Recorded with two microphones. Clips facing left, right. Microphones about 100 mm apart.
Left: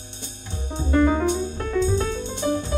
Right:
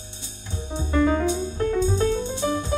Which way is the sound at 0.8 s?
50° left (ahead or behind).